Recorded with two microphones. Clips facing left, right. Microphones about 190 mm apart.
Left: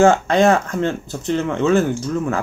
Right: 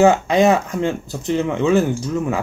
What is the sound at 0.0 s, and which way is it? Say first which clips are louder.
Speech: even; 15° right (ahead or behind).